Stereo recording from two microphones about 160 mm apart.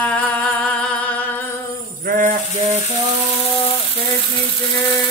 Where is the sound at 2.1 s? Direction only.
55° right (ahead or behind).